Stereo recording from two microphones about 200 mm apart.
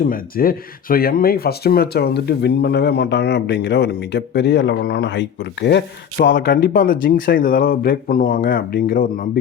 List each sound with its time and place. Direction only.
0.0 s speech: 45° left (ahead or behind)